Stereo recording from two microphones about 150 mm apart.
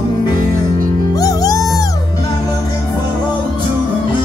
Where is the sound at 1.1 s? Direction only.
25° left (ahead or behind).